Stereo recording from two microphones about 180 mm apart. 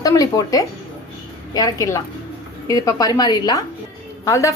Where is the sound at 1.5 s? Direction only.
20° left (ahead or behind).